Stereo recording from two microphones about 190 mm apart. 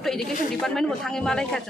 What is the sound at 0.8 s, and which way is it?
Speech, 5° left (ahead or behind).